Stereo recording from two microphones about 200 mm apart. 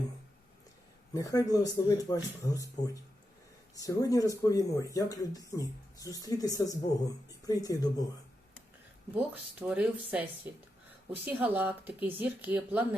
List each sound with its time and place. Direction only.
1.1 s speech: 15° left (ahead or behind)
9.1 s speech: 5° right (ahead or behind)